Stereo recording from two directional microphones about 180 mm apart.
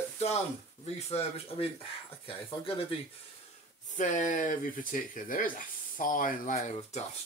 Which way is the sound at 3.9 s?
45° left (ahead or behind).